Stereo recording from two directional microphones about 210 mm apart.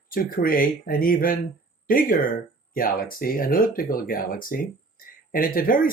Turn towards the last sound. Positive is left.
turn(degrees=40)  # may be behind; listen again after turning